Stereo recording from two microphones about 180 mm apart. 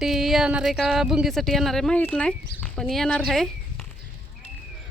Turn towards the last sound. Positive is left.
turn(degrees=0)  # may be behind; listen again after turning